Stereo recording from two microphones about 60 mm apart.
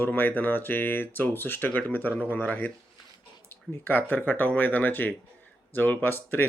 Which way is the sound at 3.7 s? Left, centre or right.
Left.